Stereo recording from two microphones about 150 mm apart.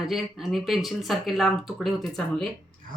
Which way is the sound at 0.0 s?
Centre (ahead or behind).